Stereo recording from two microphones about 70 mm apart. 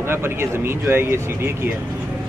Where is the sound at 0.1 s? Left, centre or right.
Right.